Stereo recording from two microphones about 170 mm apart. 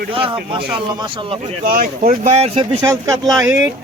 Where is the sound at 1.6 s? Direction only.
55° right (ahead or behind); by 2.6 s 40° right (ahead or behind).